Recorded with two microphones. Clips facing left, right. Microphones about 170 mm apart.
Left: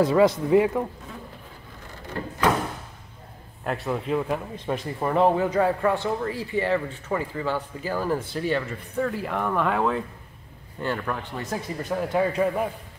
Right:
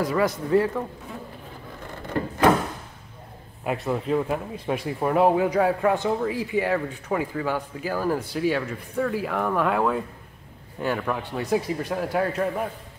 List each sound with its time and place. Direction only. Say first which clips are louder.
0.0 s a man's voice: left 5 dB; 20° left (ahead or behind)
3.6 s a man's voice: right 2 dB; centre (ahead or behind)